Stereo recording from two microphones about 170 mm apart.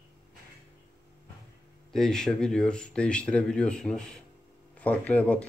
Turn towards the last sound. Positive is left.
turn(degrees=10)  # may be behind; listen again after turning